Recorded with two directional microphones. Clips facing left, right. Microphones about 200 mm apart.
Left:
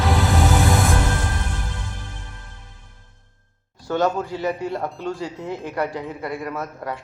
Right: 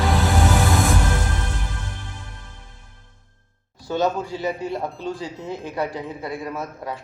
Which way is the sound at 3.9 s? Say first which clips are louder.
Left 1 dB; 15° right (ahead or behind).